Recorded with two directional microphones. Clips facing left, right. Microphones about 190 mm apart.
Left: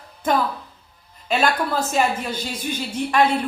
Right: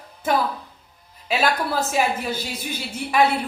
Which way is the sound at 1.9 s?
10° right (ahead or behind).